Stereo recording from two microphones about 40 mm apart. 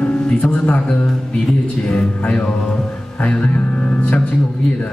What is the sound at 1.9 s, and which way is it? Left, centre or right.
Speech, left.